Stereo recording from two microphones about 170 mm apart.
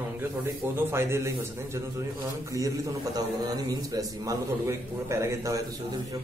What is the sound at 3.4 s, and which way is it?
A man's voice, 20° right (ahead or behind).